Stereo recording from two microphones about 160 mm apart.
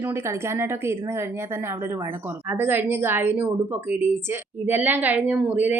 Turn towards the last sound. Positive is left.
turn(degrees=-10)  # may be behind; listen again after turning